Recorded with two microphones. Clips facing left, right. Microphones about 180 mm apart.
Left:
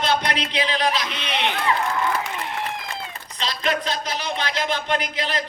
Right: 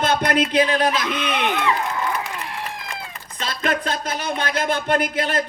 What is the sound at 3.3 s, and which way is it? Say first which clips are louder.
Speech: right 1 dB; 50° right (ahead or behind).